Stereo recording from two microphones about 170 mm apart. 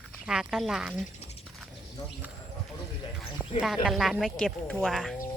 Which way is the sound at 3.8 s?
Centre (ahead or behind).